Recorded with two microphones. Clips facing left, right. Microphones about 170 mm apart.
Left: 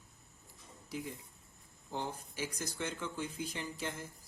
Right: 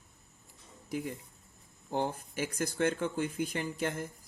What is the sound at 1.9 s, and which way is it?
Speech, 55° right (ahead or behind).